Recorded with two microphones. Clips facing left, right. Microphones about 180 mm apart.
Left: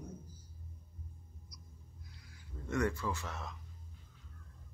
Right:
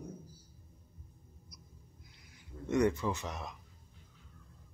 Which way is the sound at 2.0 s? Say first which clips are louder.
Left 1 dB; 20° right (ahead or behind).